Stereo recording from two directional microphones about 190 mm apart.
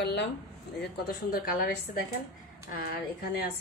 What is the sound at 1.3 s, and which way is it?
Speech, 55° left (ahead or behind).